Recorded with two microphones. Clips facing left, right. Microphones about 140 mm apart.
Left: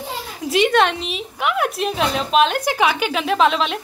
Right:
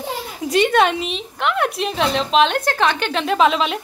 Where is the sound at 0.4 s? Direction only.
Centre (ahead or behind).